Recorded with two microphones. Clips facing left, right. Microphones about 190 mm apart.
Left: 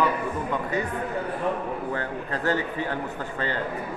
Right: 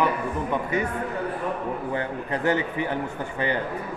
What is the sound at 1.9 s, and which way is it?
A man's voice, 20° right (ahead or behind).